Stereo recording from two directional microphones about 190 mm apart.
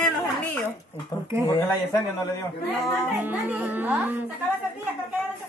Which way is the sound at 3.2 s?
10° right (ahead or behind).